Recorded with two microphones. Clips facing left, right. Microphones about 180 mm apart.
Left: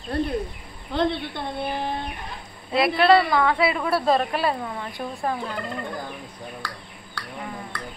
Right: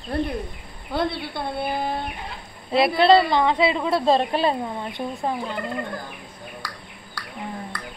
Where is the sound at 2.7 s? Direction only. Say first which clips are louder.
Right 2 dB; 25° right (ahead or behind).